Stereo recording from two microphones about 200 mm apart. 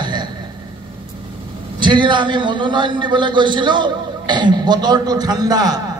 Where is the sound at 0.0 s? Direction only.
20° right (ahead or behind).